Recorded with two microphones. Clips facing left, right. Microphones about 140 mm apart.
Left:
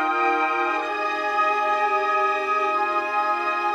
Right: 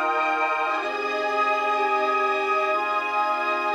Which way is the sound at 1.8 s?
25° right (ahead or behind).